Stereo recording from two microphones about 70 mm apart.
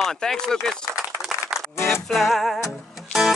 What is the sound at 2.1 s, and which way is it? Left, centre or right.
Speech, centre.